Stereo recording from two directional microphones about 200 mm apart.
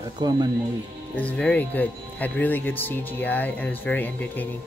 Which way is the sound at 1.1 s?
5° left (ahead or behind).